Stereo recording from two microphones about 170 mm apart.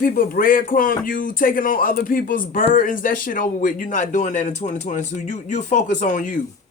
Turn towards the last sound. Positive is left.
turn(degrees=50)  # may be behind; listen again after turning